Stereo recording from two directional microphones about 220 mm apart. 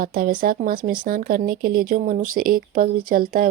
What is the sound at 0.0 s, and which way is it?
Speech, 40° right (ahead or behind).